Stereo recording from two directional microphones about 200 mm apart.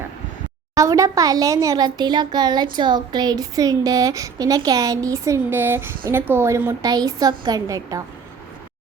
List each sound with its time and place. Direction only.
0.7 s a woman's voice: 15° right (ahead or behind)